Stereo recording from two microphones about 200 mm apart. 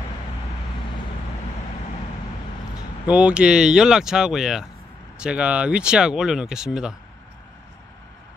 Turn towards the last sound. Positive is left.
turn(degrees=-5)  # may be behind; listen again after turning